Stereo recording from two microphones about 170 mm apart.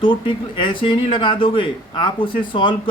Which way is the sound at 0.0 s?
30° left (ahead or behind).